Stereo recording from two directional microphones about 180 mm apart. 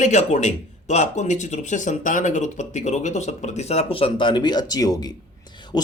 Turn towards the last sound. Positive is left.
turn(degrees=25)  # may be behind; listen again after turning